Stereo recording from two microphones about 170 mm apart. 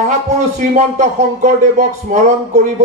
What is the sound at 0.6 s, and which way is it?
A man's voice, 45° right (ahead or behind).